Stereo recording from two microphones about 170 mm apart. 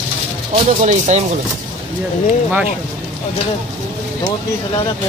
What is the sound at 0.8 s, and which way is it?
Speech, 45° right (ahead or behind).